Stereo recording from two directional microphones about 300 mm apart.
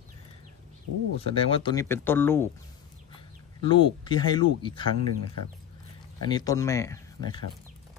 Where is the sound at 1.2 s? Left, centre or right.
Centre.